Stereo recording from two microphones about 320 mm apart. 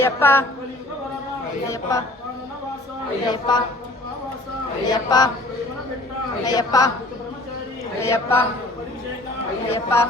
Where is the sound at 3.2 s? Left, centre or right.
Centre.